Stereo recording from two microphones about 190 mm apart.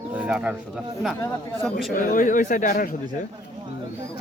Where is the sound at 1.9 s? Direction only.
45° left (ahead or behind).